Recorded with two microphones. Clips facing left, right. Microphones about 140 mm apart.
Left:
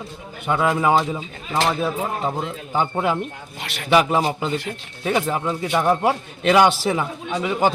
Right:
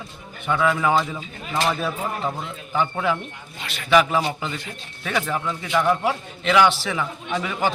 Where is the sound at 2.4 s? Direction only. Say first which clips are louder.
Left 2 dB; 35° left (ahead or behind).